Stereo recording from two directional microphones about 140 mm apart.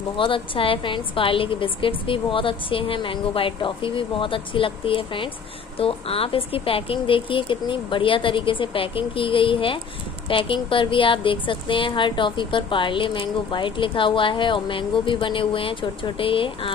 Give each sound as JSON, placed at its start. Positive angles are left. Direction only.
{"t": 0.2, "sound": "a woman's voice", "side_deg": 40}